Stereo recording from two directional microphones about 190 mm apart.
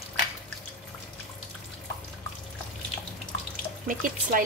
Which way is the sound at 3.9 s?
45° right (ahead or behind).